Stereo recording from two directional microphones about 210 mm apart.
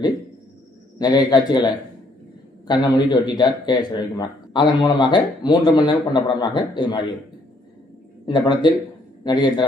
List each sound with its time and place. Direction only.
0.9 s a man's voice: 20° left (ahead or behind)
8.3 s a man's voice: 20° left (ahead or behind)